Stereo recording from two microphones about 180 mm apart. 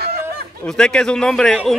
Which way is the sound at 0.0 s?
60° right (ahead or behind).